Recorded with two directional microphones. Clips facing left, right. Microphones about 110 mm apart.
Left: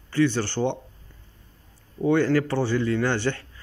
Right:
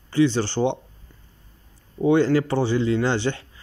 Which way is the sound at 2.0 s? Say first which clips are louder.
Right 2 dB; 10° right (ahead or behind).